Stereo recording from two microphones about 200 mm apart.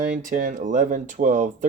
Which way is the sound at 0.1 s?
40° right (ahead or behind).